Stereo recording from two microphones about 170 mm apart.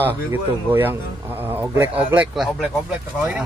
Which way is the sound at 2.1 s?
Centre (ahead or behind).